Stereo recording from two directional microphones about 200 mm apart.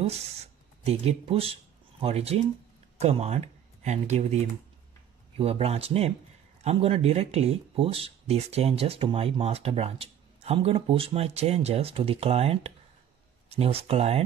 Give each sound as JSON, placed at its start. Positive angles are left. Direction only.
{"t": 0.8, "sound": "speech", "side_deg": -30}
{"t": 5.4, "sound": "speech", "side_deg": -30}